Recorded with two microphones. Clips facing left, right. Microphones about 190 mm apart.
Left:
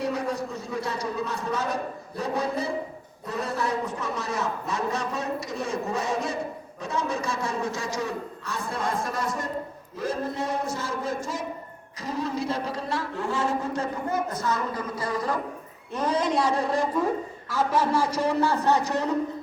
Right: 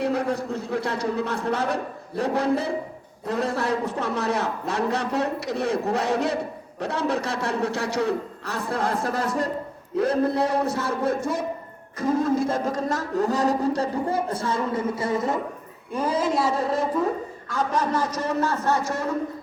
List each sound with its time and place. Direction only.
0.0 s a man's voice: 60° right (ahead or behind); by 15.4 s 25° right (ahead or behind)
15.9 s a woman's voice: 10° right (ahead or behind); by 19.1 s 15° left (ahead or behind)